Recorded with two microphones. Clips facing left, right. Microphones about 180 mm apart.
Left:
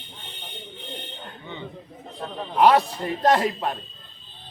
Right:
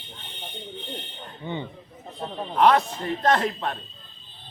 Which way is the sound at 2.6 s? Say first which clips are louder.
Left 2 dB; 35° left (ahead or behind).